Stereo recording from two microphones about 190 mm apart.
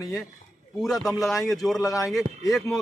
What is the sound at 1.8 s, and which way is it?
Speech, 15° left (ahead or behind).